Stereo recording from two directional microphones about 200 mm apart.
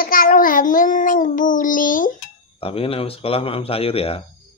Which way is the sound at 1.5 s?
40° left (ahead or behind).